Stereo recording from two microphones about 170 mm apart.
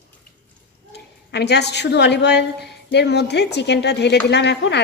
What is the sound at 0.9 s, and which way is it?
A woman's voice, 80° left.